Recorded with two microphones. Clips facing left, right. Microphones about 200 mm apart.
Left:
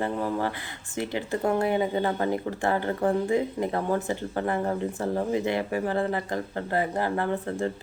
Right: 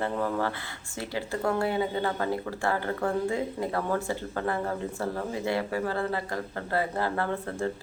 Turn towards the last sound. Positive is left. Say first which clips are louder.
# left 2 dB
turn(degrees=15)  # may be behind; listen again after turning